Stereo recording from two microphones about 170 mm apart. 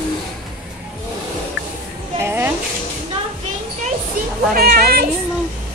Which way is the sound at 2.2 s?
15° right (ahead or behind).